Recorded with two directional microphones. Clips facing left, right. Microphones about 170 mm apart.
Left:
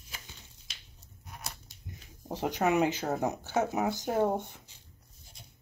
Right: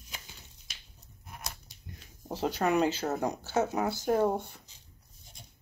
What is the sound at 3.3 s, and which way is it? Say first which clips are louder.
Speech: even; 15° left (ahead or behind).